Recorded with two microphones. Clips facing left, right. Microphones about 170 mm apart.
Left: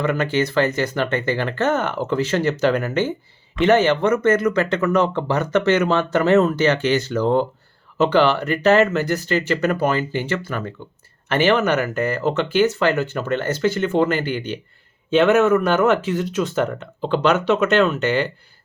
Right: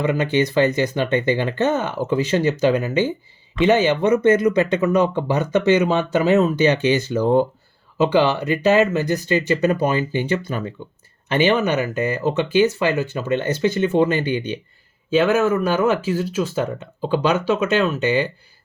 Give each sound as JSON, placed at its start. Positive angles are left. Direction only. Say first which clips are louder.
{"t": 0.0, "sound": "speech", "louder": "right 1 dB", "side_deg": -15}